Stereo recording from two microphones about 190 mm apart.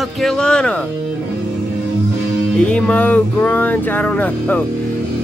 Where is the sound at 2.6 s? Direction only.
5° left (ahead or behind).